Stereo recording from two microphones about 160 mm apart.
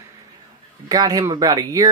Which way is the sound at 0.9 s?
25° right (ahead or behind).